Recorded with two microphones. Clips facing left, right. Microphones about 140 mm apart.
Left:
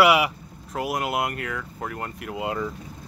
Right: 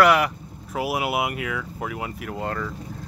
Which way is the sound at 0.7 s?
5° right (ahead or behind).